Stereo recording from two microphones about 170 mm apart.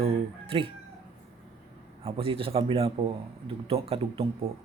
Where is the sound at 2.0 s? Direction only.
35° right (ahead or behind).